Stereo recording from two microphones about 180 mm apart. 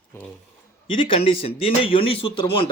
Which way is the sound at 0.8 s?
30° left (ahead or behind).